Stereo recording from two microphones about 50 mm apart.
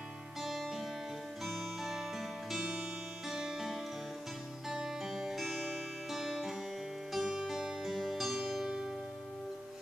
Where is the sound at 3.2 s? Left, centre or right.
Centre.